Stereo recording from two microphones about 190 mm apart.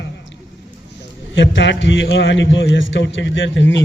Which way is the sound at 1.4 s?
70° left (ahead or behind).